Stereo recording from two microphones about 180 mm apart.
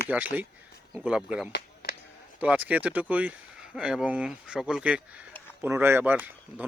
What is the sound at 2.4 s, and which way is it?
Speech, 10° right (ahead or behind).